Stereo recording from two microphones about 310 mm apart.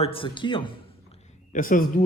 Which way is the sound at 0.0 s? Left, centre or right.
Centre.